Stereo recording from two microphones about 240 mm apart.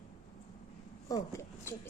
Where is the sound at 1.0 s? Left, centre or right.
Centre.